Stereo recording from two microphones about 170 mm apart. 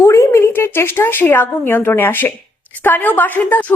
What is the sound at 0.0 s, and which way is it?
A woman's voice, 15° left (ahead or behind).